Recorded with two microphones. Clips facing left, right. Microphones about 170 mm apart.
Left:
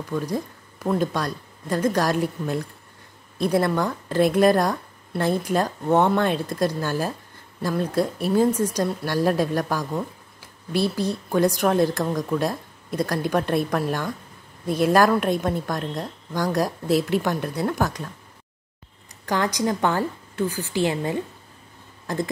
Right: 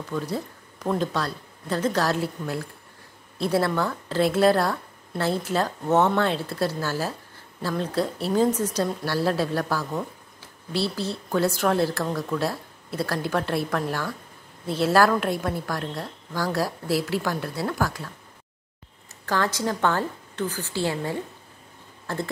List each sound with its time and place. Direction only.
0.1 s a woman's voice: 10° left (ahead or behind)
19.2 s a woman's voice: 15° left (ahead or behind)